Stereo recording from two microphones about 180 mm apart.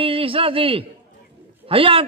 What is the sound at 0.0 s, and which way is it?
A man's voice, 30° right (ahead or behind).